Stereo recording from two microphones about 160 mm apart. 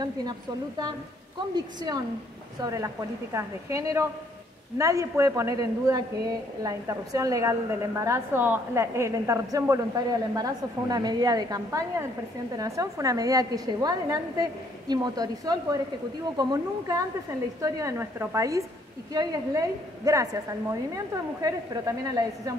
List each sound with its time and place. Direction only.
0.0 s a woman's voice: 25° right (ahead or behind)